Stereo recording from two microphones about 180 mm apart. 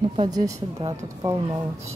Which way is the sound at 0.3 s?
20° right (ahead or behind).